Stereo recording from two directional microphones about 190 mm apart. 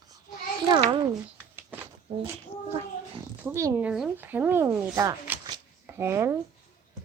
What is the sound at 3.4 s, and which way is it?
Speech, 10° right (ahead or behind).